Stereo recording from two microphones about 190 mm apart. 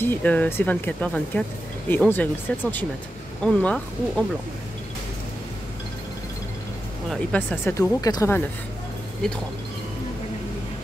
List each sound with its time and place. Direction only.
0.0 s speech: 10° left (ahead or behind)
7.1 s speech: 10° left (ahead or behind)